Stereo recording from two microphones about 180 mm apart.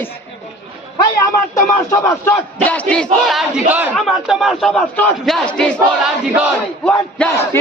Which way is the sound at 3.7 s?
5° right (ahead or behind).